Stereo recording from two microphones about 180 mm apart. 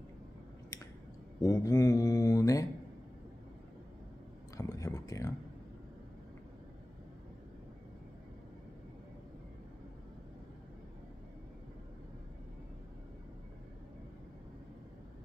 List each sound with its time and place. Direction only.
1.4 s speech: 20° left (ahead or behind)
4.6 s speech: 20° left (ahead or behind)